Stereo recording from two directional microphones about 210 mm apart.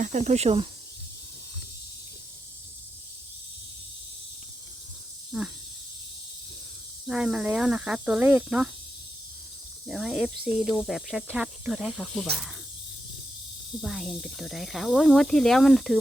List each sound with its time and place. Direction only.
0.0 s speech: 35° right (ahead or behind)
5.3 s speech: 5° right (ahead or behind)
7.1 s speech: 5° right (ahead or behind)
9.8 s speech: centre (ahead or behind)
13.8 s speech: centre (ahead or behind)